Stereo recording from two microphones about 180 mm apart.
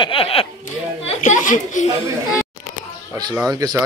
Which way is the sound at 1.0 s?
40° left (ahead or behind).